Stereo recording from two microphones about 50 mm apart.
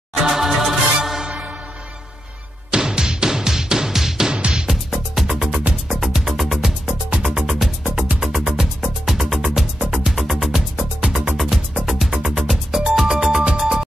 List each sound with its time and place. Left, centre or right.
0.1 s music: centre
2.7 s music: centre
11.8 s music: centre
13.2 s music: centre